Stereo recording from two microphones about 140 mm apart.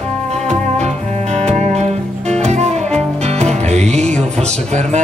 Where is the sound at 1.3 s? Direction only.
50° right (ahead or behind).